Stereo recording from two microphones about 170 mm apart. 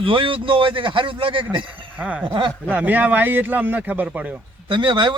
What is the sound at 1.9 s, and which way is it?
Speech, 5° right (ahead or behind).